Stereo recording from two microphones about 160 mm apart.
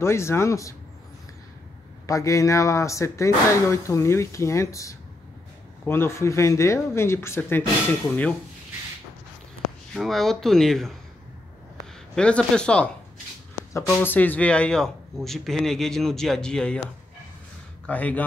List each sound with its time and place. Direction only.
0.0 s speech: 15° left (ahead or behind)
2.0 s speech: 20° left (ahead or behind)
9.9 s a man's voice: centre (ahead or behind)
12.2 s a man's voice: 5° left (ahead or behind)
17.8 s speech: 10° left (ahead or behind)